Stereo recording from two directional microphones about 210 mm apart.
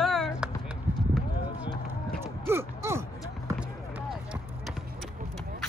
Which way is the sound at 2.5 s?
10° right (ahead or behind).